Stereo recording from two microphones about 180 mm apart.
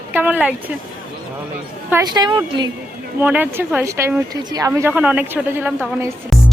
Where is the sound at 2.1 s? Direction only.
25° right (ahead or behind).